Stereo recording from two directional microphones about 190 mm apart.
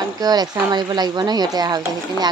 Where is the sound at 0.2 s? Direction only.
20° right (ahead or behind).